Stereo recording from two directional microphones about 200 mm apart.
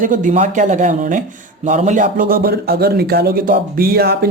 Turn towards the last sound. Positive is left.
turn(degrees=-50)  # may be behind; listen again after turning